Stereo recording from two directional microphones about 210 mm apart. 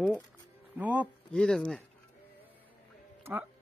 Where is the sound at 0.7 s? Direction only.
5° right (ahead or behind).